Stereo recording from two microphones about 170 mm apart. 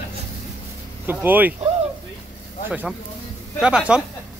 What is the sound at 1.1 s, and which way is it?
Speech, 10° right (ahead or behind).